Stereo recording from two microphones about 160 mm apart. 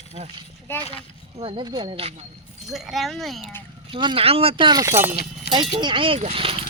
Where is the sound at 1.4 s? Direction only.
35° right (ahead or behind).